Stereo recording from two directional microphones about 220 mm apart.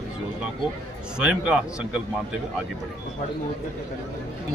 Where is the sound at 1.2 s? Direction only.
5° right (ahead or behind).